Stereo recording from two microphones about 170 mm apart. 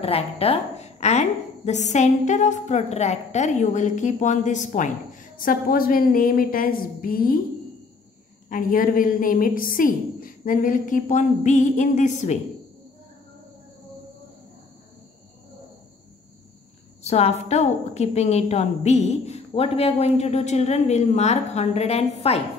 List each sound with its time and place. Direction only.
0.0 s a woman's voice: 35° left (ahead or behind); by 7.3 s 60° left (ahead or behind)
8.5 s a woman's voice: 55° left (ahead or behind)
17.0 s a woman's voice: 40° left (ahead or behind)